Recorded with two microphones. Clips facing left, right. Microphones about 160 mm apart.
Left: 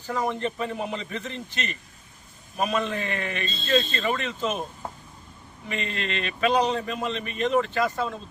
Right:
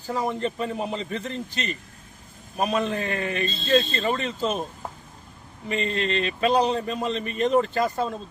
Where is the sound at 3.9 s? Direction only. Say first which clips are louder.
Right 2 dB; 35° right (ahead or behind).